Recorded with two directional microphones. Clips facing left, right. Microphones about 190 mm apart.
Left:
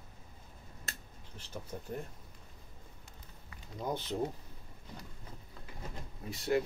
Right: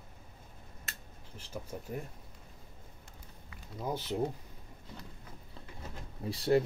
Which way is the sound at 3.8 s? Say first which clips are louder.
Even; 10° right (ahead or behind).